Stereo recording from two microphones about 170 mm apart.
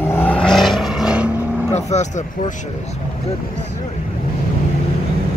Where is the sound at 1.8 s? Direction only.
40° left (ahead or behind).